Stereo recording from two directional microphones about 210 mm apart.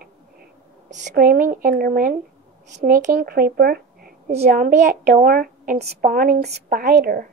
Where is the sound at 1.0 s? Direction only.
45° right (ahead or behind).